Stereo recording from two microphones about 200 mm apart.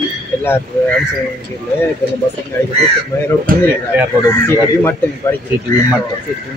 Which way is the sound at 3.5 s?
45° right (ahead or behind).